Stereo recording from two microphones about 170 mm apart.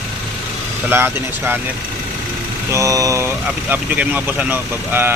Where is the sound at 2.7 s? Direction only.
20° right (ahead or behind).